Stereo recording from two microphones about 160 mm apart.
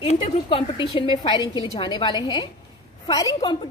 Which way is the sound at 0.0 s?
40° left (ahead or behind).